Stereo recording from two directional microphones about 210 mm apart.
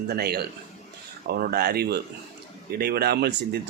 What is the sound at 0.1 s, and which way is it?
Speech, 50° right (ahead or behind).